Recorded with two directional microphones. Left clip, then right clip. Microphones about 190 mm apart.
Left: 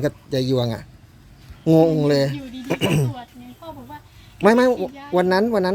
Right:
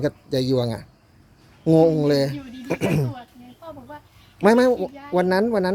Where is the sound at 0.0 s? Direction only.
20° right (ahead or behind).